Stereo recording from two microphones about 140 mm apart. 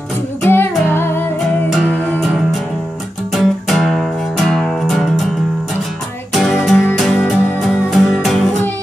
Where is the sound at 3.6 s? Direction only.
5° left (ahead or behind).